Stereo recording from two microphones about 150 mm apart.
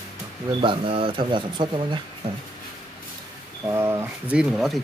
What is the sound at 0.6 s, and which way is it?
Speech, 35° right (ahead or behind).